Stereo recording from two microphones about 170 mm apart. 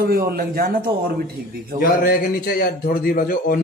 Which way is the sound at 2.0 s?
60° left (ahead or behind).